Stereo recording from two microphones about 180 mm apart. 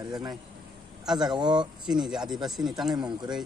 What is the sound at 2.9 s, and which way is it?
Speech, 25° right (ahead or behind).